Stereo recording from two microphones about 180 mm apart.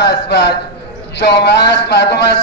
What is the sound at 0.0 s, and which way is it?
A man's voice, 70° left (ahead or behind).